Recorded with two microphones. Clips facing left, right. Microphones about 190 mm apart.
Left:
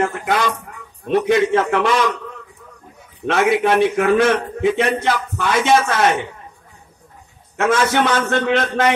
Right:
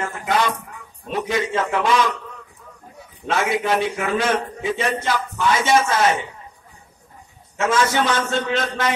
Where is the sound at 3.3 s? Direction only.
60° left (ahead or behind).